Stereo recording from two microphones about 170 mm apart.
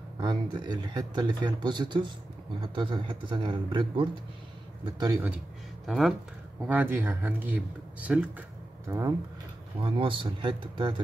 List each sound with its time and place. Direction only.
0.2 s speech: 25° right (ahead or behind)
5.9 s speech: centre (ahead or behind)
6.7 s speech: 10° right (ahead or behind)
9.8 s speech: 30° right (ahead or behind)